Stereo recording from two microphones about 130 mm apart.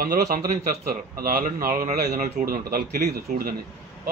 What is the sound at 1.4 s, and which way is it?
A man's voice, 90° right.